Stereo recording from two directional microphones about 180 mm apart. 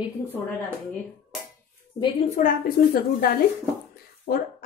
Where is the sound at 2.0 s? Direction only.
35° left (ahead or behind).